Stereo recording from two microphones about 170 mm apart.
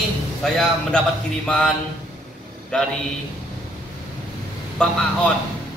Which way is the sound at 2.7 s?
5° left (ahead or behind).